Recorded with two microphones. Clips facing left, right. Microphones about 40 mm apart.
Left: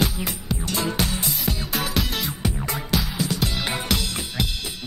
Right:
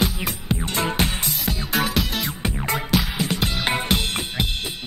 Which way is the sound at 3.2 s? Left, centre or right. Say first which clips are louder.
Right 2 dB; right.